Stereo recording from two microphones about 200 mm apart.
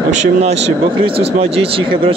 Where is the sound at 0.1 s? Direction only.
35° right (ahead or behind).